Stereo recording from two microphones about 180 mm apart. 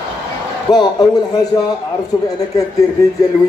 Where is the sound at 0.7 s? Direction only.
20° left (ahead or behind).